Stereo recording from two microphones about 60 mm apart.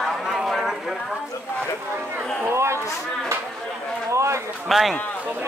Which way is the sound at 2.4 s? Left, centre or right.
Right.